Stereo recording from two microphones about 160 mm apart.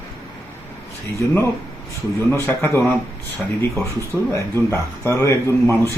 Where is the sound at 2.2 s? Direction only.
15° left (ahead or behind).